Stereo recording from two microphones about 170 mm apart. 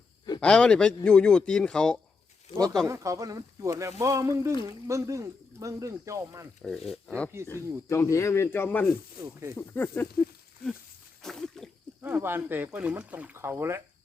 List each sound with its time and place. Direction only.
0.3 s speech: 5° left (ahead or behind)
2.8 s speech: 20° right (ahead or behind)
6.6 s speech: 5° left (ahead or behind)
7.4 s speech: 15° left (ahead or behind)
11.2 s a sound: centre (ahead or behind)
12.0 s speech: 15° right (ahead or behind)